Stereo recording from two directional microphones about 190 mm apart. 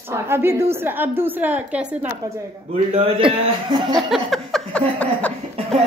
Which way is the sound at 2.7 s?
30° right (ahead or behind).